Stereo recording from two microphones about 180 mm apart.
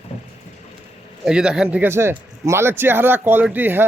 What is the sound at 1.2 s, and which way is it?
Speech, 5° right (ahead or behind).